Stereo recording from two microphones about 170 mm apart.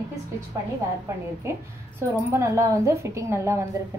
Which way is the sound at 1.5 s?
15° right (ahead or behind).